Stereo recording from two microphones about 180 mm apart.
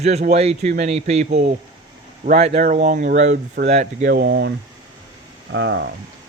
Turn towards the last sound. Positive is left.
turn(degrees=-85)